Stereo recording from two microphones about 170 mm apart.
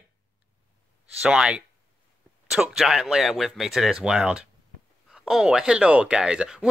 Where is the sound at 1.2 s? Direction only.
5° right (ahead or behind).